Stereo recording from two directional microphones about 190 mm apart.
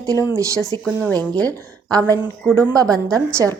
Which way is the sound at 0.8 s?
5° left (ahead or behind).